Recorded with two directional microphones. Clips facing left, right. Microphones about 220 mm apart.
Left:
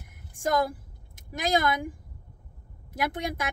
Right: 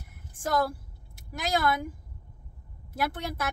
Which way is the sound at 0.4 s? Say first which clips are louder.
Left 2 dB; 20° left (ahead or behind).